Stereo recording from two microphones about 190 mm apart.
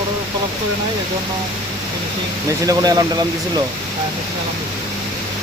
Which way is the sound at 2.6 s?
20° right (ahead or behind).